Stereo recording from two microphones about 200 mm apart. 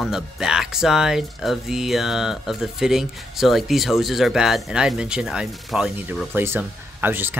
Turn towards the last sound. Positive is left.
turn(degrees=-10)  # may be behind; listen again after turning